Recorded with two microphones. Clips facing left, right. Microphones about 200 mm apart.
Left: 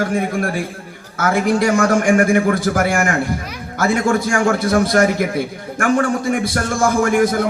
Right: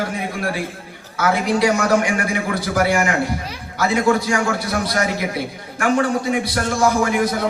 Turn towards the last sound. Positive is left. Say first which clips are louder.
# left 1 dB
turn(degrees=50)  # may be behind; listen again after turning